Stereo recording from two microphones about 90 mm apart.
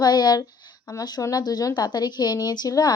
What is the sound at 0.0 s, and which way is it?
A woman's voice, 50° left (ahead or behind).